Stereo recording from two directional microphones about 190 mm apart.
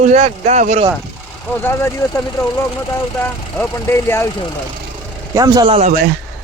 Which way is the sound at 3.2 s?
10° left (ahead or behind).